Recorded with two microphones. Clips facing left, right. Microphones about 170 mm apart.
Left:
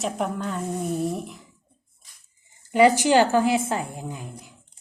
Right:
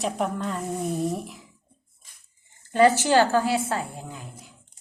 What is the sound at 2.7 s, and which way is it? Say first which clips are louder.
A woman's voice: left 1 dB; 15° left (ahead or behind).